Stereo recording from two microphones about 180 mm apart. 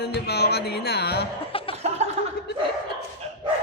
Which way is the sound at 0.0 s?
65° left (ahead or behind).